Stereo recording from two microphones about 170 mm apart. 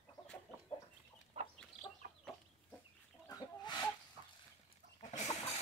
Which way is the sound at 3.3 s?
25° left (ahead or behind).